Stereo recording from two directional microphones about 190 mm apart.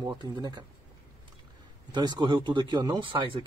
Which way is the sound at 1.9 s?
25° right (ahead or behind).